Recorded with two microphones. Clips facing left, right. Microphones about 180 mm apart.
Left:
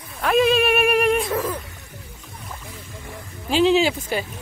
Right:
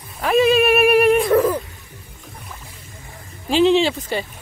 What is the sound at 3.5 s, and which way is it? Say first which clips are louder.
Speech: right 2 dB; centre (ahead or behind).